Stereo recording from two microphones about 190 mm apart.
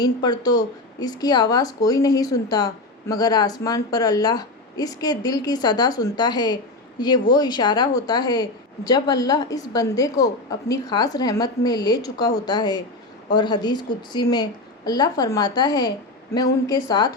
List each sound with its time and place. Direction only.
0.0 s speech: 20° left (ahead or behind)